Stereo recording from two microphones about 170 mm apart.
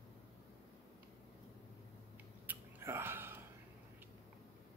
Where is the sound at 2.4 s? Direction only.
10° right (ahead or behind).